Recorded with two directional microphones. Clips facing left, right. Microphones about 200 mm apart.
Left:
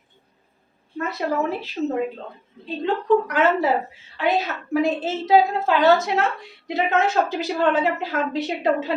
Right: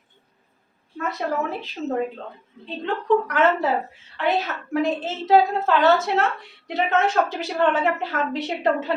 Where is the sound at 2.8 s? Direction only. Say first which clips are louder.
Left 2 dB; 10° left (ahead or behind).